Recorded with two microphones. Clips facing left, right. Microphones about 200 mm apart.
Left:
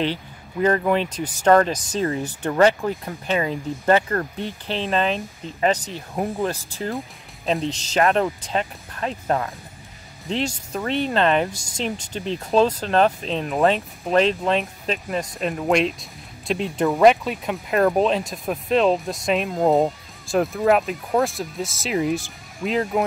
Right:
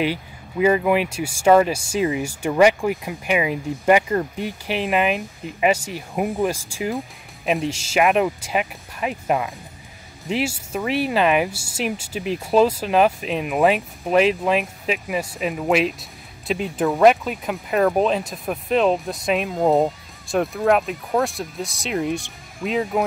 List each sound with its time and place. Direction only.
0.0 s speech: 10° right (ahead or behind)